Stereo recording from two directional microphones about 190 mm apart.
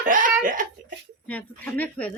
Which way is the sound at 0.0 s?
45° right (ahead or behind).